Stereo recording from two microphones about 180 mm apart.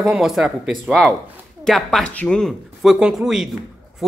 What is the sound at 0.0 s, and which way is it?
A woman's voice, centre (ahead or behind).